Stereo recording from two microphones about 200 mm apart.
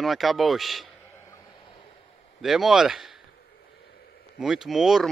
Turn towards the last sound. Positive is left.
turn(degrees=0)  # may be behind; listen again after turning